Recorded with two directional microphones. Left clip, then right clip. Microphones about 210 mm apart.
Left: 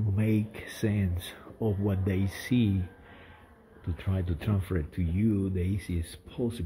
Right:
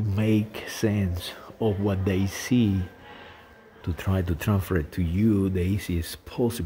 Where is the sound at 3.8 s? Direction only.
15° right (ahead or behind).